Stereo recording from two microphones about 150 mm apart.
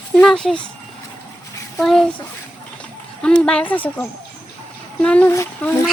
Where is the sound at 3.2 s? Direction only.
5° left (ahead or behind).